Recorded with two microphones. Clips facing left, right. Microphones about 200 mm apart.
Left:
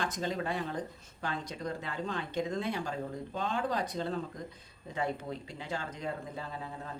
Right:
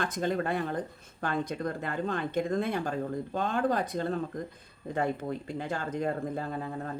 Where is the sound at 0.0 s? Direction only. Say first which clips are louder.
Right 4 dB; 55° right (ahead or behind).